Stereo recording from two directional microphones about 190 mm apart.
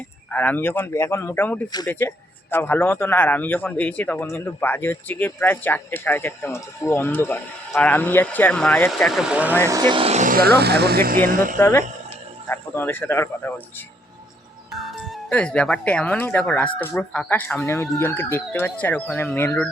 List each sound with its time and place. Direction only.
0.3 s a man's voice: 10° left (ahead or behind); by 9.6 s 5° right (ahead or behind)
9.6 s speech: 20° right (ahead or behind); by 11.5 s 45° right (ahead or behind)
11.6 s a man's voice: 10° left (ahead or behind)
14.7 s a man's voice: centre (ahead or behind)